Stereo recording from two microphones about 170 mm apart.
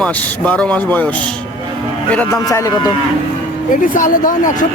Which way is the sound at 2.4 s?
20° left (ahead or behind).